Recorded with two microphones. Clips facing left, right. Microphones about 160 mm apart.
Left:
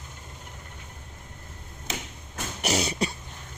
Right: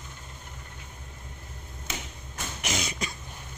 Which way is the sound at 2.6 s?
35° left (ahead or behind).